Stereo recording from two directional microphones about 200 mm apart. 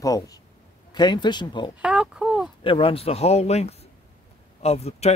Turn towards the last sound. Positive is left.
turn(degrees=30)  # may be behind; listen again after turning